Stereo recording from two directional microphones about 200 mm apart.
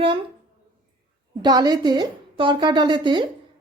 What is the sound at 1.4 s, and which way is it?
A woman's voice, 20° right (ahead or behind).